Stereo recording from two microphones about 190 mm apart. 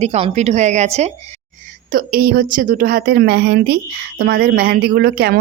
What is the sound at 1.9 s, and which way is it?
A woman's voice, 50° right (ahead or behind).